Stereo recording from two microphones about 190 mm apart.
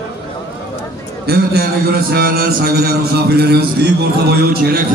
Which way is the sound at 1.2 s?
55° right (ahead or behind).